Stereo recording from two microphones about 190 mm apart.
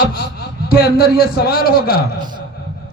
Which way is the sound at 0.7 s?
50° left (ahead or behind).